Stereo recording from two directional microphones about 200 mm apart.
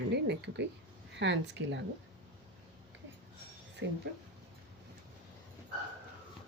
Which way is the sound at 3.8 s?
65° right (ahead or behind).